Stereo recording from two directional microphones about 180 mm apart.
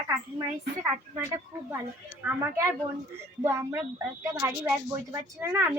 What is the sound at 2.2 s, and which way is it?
A woman's voice, 15° right (ahead or behind).